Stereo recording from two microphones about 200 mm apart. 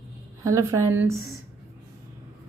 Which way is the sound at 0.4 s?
15° right (ahead or behind).